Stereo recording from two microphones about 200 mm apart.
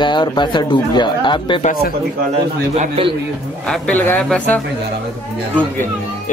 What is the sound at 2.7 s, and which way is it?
Speech, 30° right (ahead or behind).